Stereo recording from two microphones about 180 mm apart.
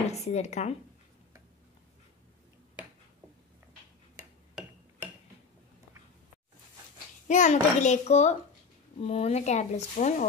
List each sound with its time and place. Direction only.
0.1 s speech: 40° left (ahead or behind)
7.2 s speech: 45° left (ahead or behind)